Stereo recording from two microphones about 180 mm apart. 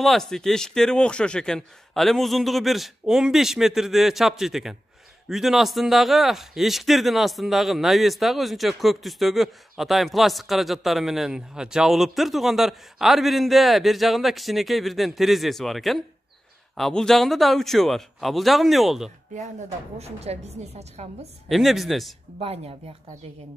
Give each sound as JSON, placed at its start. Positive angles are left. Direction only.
{"t": 0.0, "sound": "speech", "side_deg": 0}
{"t": 20.0, "sound": "a woman's voice", "side_deg": -35}
{"t": 21.5, "sound": "speech", "side_deg": 0}
{"t": 22.4, "sound": "a woman's voice", "side_deg": -35}